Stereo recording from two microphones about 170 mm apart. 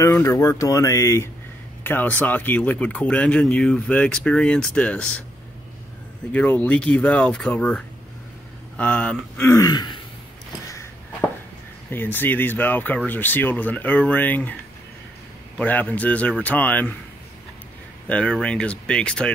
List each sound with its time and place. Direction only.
0.0 s speech: 15° left (ahead or behind)
6.3 s speech: 10° left (ahead or behind); by 10.0 s 25° left (ahead or behind)
11.9 s speech: 10° left (ahead or behind)
15.6 s speech: 10° left (ahead or behind)
18.0 s speech: 5° left (ahead or behind)